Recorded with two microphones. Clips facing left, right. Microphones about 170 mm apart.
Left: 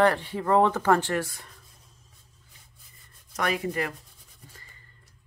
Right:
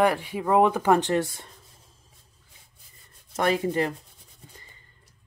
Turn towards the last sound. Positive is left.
turn(degrees=-20)  # may be behind; listen again after turning